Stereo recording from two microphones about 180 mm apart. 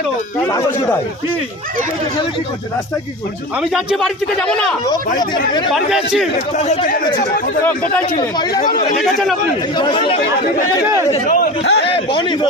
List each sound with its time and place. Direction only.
3.6 s speech: centre (ahead or behind)
4.9 s speech: 25° left (ahead or behind)
5.7 s speech: centre (ahead or behind)
6.6 s speech: 40° left (ahead or behind)
7.6 s speech: 10° left (ahead or behind)
8.6 s speech: 45° left (ahead or behind)
9.0 s speech: centre (ahead or behind)
9.7 s speech: 25° left (ahead or behind)
11.6 s a man's voice: 70° left (ahead or behind)
12.1 s speech: 25° left (ahead or behind)